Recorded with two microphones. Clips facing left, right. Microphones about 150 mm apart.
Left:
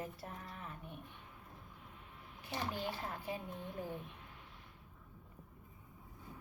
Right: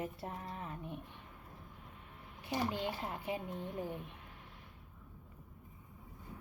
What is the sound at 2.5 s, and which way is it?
Speech, 20° right (ahead or behind).